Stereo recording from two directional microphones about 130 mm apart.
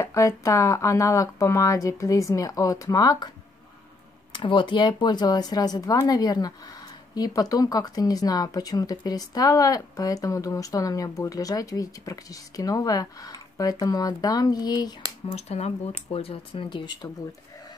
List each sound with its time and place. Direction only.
0.0 s speech: 25° left (ahead or behind)
4.3 s speech: 40° left (ahead or behind)
15.3 s speech: 55° left (ahead or behind); by 17.1 s 35° left (ahead or behind)